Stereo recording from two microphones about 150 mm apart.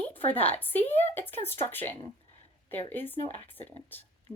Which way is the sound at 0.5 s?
15° left (ahead or behind).